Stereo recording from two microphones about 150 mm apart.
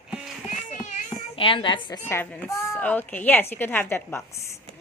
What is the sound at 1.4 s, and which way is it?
Speech, 35° left (ahead or behind).